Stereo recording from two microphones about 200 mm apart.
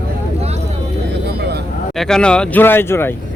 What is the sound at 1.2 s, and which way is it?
Vehicle, 55° right (ahead or behind).